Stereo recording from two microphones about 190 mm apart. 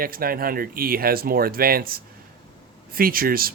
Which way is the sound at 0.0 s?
50° right (ahead or behind).